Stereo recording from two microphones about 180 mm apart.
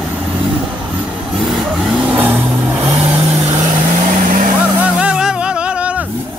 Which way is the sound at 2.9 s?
35° right (ahead or behind).